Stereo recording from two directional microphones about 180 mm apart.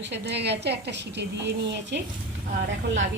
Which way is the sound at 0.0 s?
70° right (ahead or behind).